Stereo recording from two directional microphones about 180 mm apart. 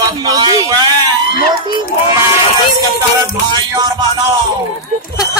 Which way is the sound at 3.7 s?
20° right (ahead or behind).